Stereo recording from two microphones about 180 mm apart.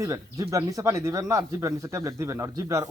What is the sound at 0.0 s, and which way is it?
Speech, 15° right (ahead or behind).